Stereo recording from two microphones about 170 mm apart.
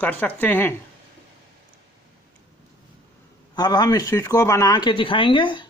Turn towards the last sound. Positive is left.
turn(degrees=30)  # may be behind; listen again after turning